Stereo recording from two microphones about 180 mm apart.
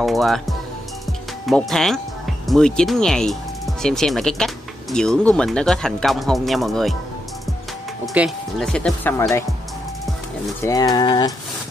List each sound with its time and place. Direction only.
0.0 s speech: centre (ahead or behind)
8.0 s speech: centre (ahead or behind)
10.6 s speech: 20° left (ahead or behind)